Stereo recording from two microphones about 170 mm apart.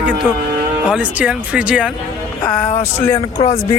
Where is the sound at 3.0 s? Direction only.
15° left (ahead or behind).